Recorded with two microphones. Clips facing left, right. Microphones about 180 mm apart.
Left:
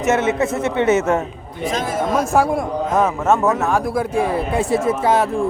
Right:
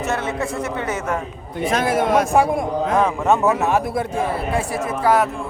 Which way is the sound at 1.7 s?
65° right (ahead or behind).